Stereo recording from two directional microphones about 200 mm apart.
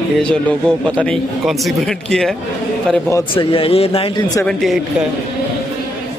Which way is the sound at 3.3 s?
30° left (ahead or behind).